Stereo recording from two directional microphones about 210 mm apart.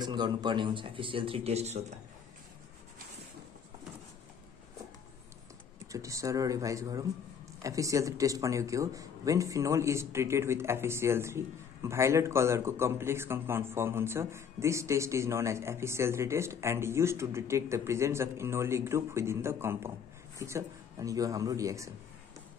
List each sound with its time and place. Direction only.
0.0 s speech: 20° right (ahead or behind)
5.9 s speech: 15° right (ahead or behind)